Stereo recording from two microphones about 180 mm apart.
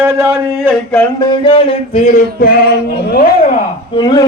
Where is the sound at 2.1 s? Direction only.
50° left (ahead or behind).